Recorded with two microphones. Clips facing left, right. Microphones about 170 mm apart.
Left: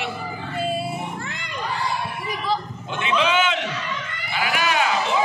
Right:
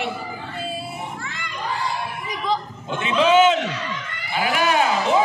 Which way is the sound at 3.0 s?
40° right (ahead or behind).